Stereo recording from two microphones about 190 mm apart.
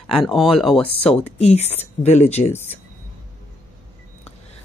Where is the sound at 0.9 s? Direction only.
35° left (ahead or behind).